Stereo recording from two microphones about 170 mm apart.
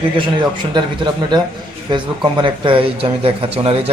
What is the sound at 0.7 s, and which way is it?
A man's voice, 25° right (ahead or behind).